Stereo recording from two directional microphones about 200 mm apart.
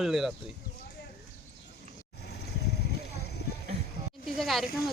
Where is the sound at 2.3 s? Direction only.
55° left (ahead or behind).